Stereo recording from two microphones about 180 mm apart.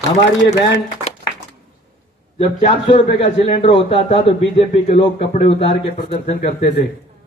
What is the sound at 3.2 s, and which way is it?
Speech, 30° left (ahead or behind).